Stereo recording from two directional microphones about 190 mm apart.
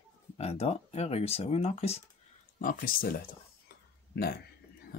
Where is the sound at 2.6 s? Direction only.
45° left (ahead or behind).